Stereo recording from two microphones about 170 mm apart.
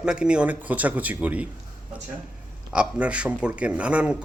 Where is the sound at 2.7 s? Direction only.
5° right (ahead or behind).